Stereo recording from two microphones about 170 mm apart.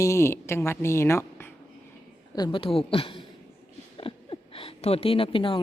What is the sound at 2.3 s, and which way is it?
Speech, 25° left (ahead or behind).